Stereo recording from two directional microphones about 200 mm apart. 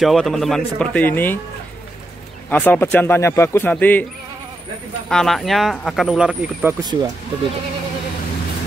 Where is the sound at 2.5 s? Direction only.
10° left (ahead or behind).